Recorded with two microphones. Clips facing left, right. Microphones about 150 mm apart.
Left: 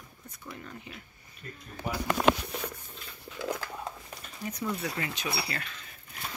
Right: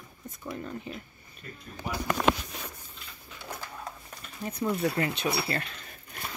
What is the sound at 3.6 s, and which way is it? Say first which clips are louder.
Dog: left 3 dB; 90° left.